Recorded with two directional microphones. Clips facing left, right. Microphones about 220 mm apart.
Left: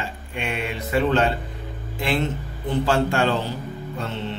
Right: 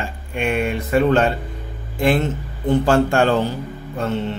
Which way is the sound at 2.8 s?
50° right (ahead or behind).